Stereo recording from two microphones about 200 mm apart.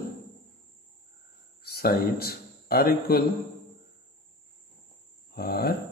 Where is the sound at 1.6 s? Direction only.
50° left (ahead or behind).